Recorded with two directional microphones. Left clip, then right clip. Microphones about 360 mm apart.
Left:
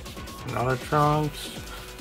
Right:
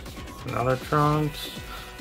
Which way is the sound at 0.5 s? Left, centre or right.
Centre.